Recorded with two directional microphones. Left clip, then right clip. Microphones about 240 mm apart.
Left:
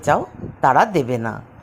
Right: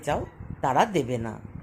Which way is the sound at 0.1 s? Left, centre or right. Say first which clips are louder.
Left 10 dB; centre.